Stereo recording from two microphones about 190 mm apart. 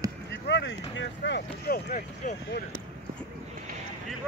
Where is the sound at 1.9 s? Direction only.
40° left (ahead or behind).